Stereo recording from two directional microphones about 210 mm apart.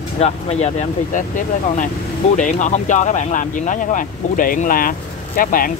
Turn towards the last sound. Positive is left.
turn(degrees=45)  # may be behind; listen again after turning